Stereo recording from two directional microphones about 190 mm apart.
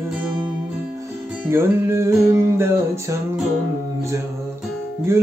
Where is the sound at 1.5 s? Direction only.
15° right (ahead or behind).